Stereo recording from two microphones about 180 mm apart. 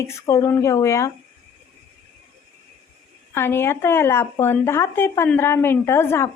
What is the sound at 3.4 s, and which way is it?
A woman's voice, 15° left (ahead or behind).